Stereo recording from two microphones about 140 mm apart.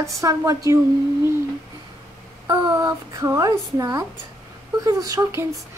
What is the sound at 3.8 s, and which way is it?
A woman's voice, 25° right (ahead or behind).